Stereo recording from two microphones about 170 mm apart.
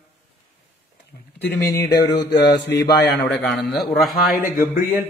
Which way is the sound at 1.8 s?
20° left (ahead or behind).